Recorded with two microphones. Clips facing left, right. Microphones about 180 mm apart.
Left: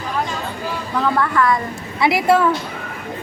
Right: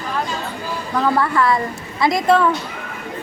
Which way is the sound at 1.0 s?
10° right (ahead or behind).